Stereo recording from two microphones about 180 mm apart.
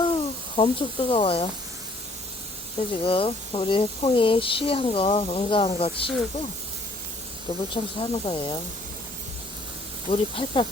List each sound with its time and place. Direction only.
0.0 s speech: 30° left (ahead or behind)
3.0 s speech: 30° left (ahead or behind)
7.7 s speech: 30° left (ahead or behind)
10.1 s speech: 30° left (ahead or behind)